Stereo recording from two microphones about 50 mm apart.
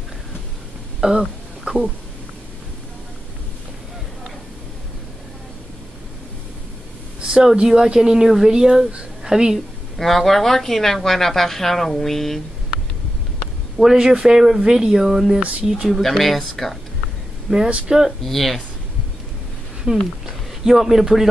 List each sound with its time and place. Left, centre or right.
1.0 s a sound: centre
7.2 s a woman's voice: centre
9.9 s speech: centre
13.7 s speech: centre
15.9 s speech: centre
17.5 s speech: right
18.2 s speech: centre
19.9 s speech: centre
20.2 s speech: centre